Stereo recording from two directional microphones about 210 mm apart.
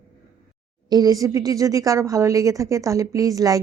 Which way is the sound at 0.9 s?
20° right (ahead or behind).